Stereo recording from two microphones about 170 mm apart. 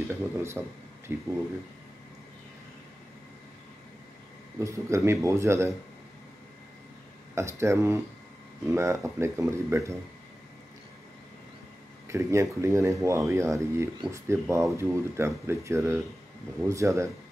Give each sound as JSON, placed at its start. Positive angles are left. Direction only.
{"t": 0.1, "sound": "speech", "side_deg": -15}
{"t": 4.6, "sound": "speech", "side_deg": -15}
{"t": 7.3, "sound": "speech", "side_deg": -15}
{"t": 12.1, "sound": "speech", "side_deg": -15}